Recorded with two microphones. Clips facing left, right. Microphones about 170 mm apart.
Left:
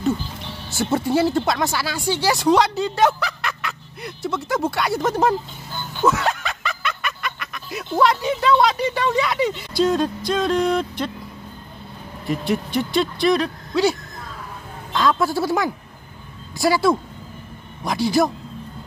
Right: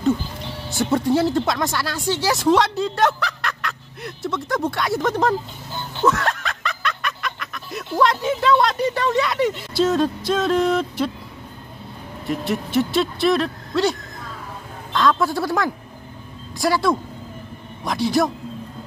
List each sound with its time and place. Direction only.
0.7 s speech: centre (ahead or behind)
6.0 s snicker: centre (ahead or behind)
8.0 s speech: centre (ahead or behind)
12.3 s speech: centre (ahead or behind)